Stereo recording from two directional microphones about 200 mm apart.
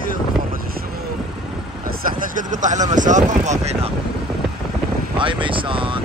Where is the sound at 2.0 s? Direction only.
40° right (ahead or behind).